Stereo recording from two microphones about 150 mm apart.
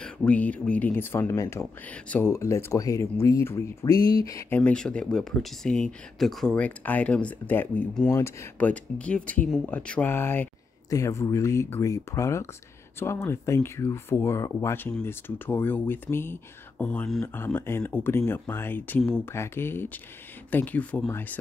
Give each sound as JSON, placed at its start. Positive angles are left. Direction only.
{"t": 0.0, "sound": "speech", "side_deg": 10}